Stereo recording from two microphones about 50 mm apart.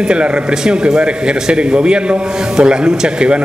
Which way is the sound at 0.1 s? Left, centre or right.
Centre.